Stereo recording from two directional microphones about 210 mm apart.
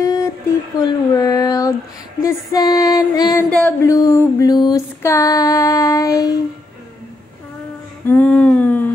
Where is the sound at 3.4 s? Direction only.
5° left (ahead or behind).